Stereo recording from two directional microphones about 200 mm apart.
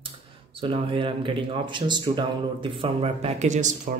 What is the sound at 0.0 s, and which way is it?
Speech, 25° right (ahead or behind).